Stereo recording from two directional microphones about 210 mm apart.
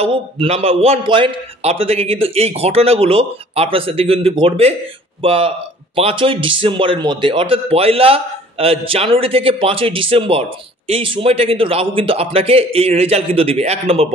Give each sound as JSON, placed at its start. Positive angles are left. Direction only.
{"t": 0.0, "sound": "a man's voice", "side_deg": -30}